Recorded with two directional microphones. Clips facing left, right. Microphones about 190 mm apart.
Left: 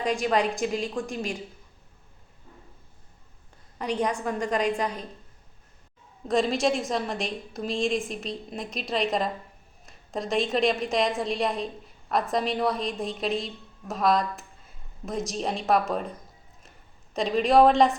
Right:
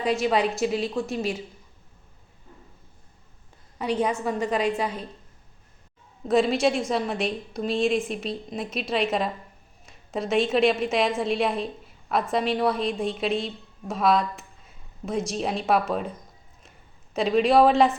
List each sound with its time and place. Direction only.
0.0 s a woman's voice: 5° right (ahead or behind)
3.8 s a woman's voice: 5° right (ahead or behind)
6.2 s a woman's voice: centre (ahead or behind)
17.2 s a woman's voice: centre (ahead or behind)